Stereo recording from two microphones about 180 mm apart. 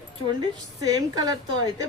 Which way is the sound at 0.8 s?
20° right (ahead or behind).